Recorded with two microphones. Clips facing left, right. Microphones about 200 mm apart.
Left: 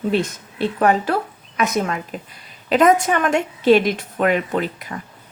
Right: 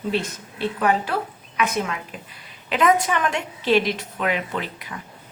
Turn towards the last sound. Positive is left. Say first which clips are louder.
# left 7 dB
turn(degrees=45)  # may be behind; listen again after turning